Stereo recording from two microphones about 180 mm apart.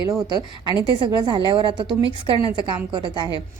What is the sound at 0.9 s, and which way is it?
Speech, 25° right (ahead or behind).